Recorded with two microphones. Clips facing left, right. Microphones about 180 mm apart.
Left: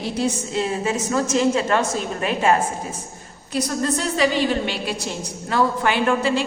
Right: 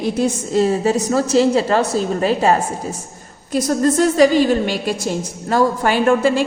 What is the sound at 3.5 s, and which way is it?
A woman's voice, 45° right (ahead or behind).